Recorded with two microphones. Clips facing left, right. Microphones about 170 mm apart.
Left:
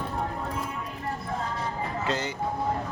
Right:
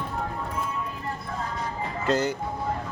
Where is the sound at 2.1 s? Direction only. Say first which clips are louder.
Right 8 dB; 45° right (ahead or behind).